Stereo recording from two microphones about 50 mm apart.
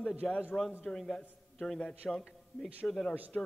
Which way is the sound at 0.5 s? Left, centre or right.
Left.